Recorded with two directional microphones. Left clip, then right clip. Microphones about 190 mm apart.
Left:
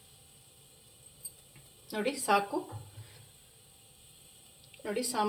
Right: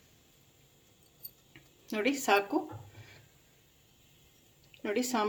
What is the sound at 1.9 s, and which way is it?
Speech, 55° right (ahead or behind).